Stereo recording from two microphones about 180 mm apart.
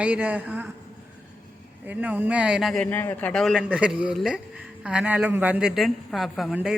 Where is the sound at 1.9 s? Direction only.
10° right (ahead or behind).